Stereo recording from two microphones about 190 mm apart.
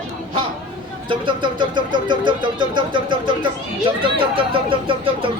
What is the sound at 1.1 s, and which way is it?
Speech, 25° right (ahead or behind).